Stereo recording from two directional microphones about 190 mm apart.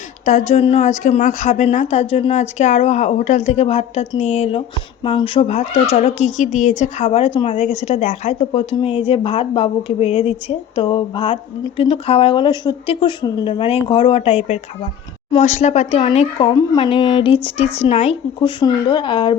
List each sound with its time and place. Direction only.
0.3 s a woman's voice: 35° left (ahead or behind)